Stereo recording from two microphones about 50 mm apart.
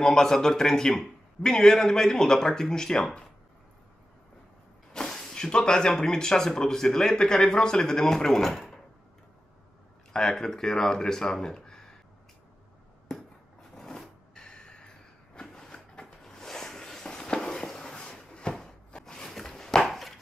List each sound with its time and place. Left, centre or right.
0.0 s speech: centre
4.9 s speech: centre
10.1 s speech: centre
13.7 s a sound: centre